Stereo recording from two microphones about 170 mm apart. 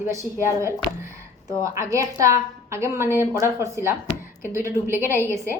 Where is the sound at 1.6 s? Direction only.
20° right (ahead or behind).